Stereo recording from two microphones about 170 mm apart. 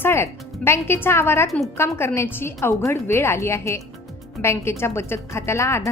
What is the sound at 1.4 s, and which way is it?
Speech, centre (ahead or behind).